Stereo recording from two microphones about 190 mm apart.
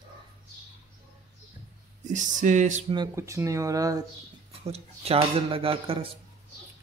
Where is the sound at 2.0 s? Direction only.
40° right (ahead or behind).